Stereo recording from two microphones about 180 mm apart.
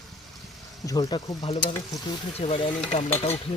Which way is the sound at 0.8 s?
20° left (ahead or behind).